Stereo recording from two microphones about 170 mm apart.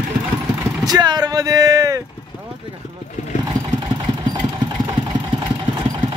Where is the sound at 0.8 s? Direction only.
25° right (ahead or behind).